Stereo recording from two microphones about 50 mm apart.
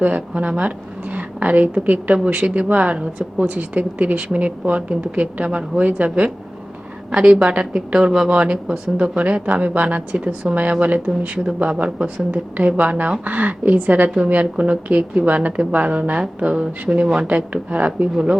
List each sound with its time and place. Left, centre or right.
0.0 s speech: right
1.1 s whispering: right
1.7 s a woman's voice: right
7.1 s a woman's voice: right
11.3 s a woman's voice: centre